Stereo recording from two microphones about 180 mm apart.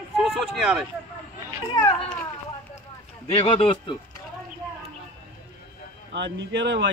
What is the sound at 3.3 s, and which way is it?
Speech, 30° left (ahead or behind).